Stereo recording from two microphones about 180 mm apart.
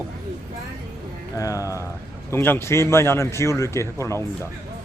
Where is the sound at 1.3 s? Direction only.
20° left (ahead or behind).